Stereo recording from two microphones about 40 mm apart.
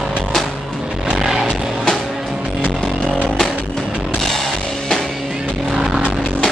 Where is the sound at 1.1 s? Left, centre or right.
Centre.